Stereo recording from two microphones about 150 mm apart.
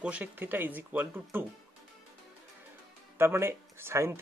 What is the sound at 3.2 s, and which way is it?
Speech, 15° right (ahead or behind).